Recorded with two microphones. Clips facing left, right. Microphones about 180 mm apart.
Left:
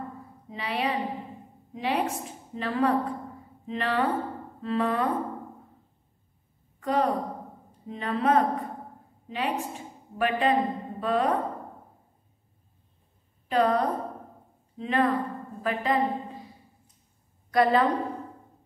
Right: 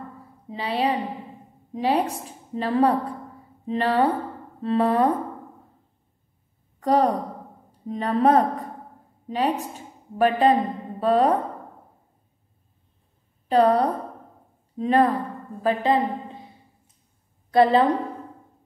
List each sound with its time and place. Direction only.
0.5 s a woman's voice: 30° right (ahead or behind)
6.8 s a woman's voice: 35° right (ahead or behind)
13.5 s a woman's voice: 35° right (ahead or behind)
15.6 s a sound: 25° right (ahead or behind)
17.5 s a woman's voice: 30° right (ahead or behind)